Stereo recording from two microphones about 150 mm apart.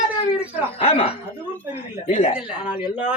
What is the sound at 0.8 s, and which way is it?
Speech, 45° left (ahead or behind).